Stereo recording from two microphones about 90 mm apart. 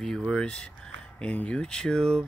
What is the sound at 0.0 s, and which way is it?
Speech, 10° left (ahead or behind).